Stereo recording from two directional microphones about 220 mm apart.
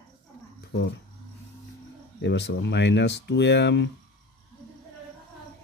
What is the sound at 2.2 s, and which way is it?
Speech, 50° left (ahead or behind).